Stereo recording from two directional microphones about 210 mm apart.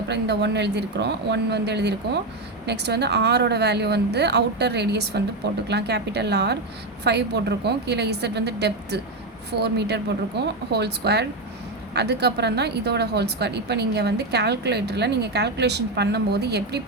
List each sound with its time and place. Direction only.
0.1 s a woman's voice: 55° right (ahead or behind)